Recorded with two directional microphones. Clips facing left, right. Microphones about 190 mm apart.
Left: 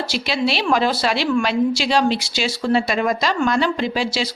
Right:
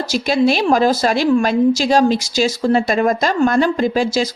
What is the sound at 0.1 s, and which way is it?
A woman's voice, 45° right (ahead or behind).